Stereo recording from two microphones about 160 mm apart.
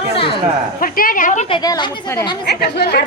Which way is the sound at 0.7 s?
60° left (ahead or behind).